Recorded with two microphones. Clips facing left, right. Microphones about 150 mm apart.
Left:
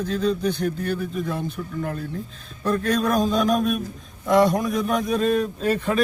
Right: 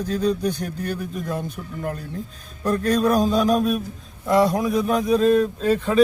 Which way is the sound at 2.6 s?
35° right (ahead or behind).